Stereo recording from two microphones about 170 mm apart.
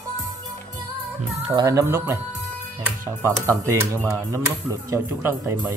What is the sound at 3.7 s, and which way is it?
Speech, 15° right (ahead or behind).